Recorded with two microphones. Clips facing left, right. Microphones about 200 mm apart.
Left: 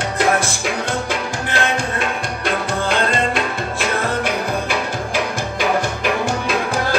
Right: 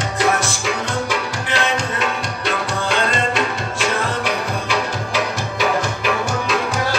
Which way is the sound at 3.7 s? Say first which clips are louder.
Left 1 dB; 55° left (ahead or behind).